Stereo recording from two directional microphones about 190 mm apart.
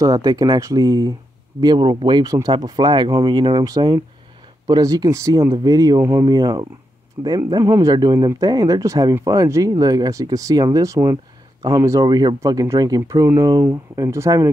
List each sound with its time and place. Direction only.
0.0 s speech: 20° right (ahead or behind)